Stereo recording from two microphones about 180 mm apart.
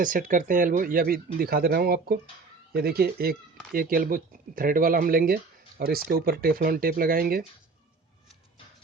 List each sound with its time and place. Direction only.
0.0 s speech: 50° right (ahead or behind)